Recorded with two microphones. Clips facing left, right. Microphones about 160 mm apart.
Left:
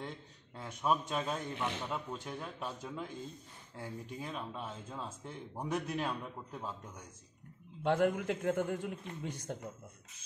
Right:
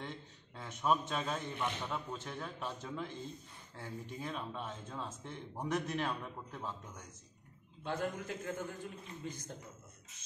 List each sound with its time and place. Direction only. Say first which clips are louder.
0.6 s speech: even; 10° left (ahead or behind)
7.8 s a man's voice: left 8 dB; 70° left (ahead or behind)